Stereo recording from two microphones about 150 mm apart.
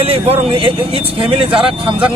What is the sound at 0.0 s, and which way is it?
A man's voice, 40° right (ahead or behind).